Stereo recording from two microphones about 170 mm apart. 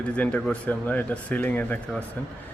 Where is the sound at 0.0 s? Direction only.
5° left (ahead or behind).